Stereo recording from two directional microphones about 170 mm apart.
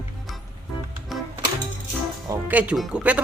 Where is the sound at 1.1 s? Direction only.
Centre (ahead or behind).